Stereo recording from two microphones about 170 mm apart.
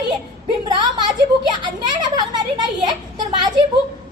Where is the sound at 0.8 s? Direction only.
25° right (ahead or behind).